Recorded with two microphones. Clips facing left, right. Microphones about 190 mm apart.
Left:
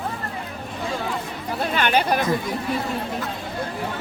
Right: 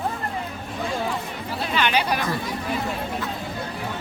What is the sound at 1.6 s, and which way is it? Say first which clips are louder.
Speech: left 2 dB; 50° left (ahead or behind).